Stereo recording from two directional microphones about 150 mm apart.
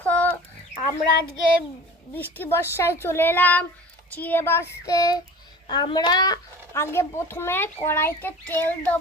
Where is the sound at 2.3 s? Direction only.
15° left (ahead or behind).